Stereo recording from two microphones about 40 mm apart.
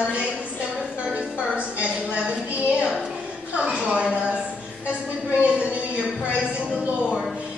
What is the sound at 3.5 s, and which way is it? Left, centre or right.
Speech, right.